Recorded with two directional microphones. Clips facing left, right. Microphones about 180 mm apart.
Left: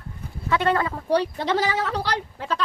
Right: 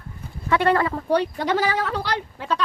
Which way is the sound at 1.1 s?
35° left (ahead or behind).